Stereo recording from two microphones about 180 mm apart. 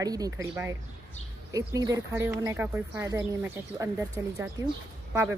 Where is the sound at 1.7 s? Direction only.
20° right (ahead or behind).